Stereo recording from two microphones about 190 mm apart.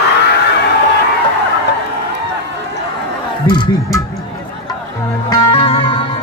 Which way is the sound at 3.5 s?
20° left (ahead or behind).